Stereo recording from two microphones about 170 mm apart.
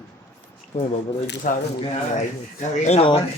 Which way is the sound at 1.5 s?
50° left (ahead or behind).